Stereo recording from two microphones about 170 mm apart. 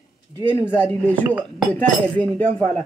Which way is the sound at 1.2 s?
10° right (ahead or behind).